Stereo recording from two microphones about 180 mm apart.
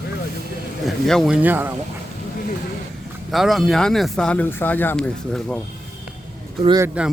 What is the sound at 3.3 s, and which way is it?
Speech, centre (ahead or behind).